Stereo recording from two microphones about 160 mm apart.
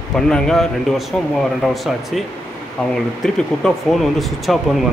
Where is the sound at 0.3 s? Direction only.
5° left (ahead or behind).